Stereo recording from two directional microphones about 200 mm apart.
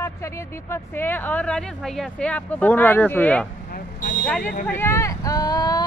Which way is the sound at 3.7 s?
45° left (ahead or behind).